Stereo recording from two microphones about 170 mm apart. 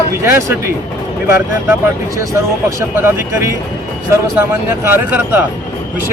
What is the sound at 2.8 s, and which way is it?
Speech, 15° right (ahead or behind).